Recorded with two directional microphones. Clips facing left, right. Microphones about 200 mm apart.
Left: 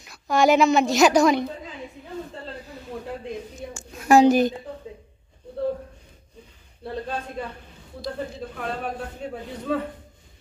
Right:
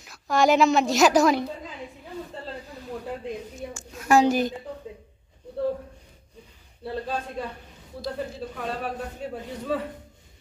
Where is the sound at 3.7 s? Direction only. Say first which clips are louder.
Left 4 dB; 20° left (ahead or behind).